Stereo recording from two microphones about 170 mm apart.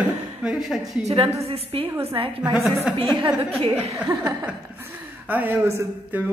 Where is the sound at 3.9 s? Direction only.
15° right (ahead or behind).